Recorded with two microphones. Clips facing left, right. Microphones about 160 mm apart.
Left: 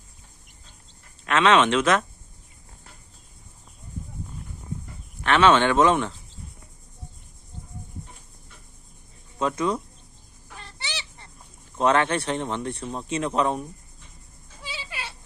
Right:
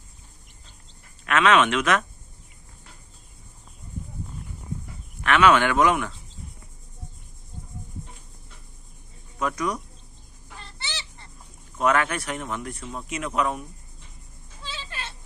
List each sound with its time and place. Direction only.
1.2 s speech: 25° left (ahead or behind)
5.2 s speech: 30° left (ahead or behind)
9.4 s speech: 25° left (ahead or behind)
10.6 s chicken: 15° left (ahead or behind)
11.8 s speech: 30° left (ahead or behind)
14.6 s a sound: 10° left (ahead or behind)